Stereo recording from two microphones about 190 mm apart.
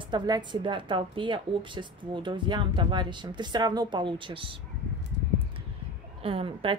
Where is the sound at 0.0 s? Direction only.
25° right (ahead or behind).